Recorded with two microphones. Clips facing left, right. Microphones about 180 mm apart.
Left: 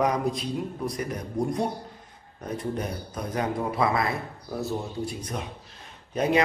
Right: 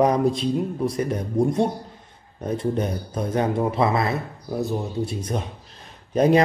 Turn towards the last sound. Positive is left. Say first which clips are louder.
# right 7 dB
turn(degrees=-35)  # may be behind; listen again after turning